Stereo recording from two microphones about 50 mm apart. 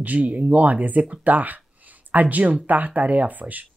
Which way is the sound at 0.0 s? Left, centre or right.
Right.